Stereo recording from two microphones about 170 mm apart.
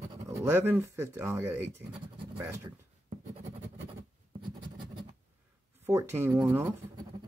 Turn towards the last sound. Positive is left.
turn(degrees=-15)  # may be behind; listen again after turning